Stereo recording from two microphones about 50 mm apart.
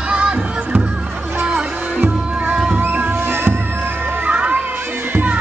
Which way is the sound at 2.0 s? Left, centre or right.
Right.